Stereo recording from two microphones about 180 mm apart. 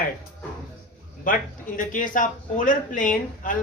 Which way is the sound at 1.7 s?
45° left (ahead or behind).